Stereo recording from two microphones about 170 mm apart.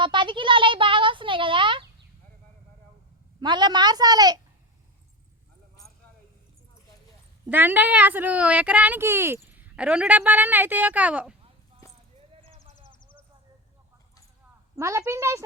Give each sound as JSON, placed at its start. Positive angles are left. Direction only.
{"t": 0.0, "sound": "a sound", "side_deg": -30}
{"t": 3.4, "sound": "a woman's voice", "side_deg": -25}
{"t": 7.4, "sound": "speech", "side_deg": -10}
{"t": 14.8, "sound": "speech", "side_deg": -15}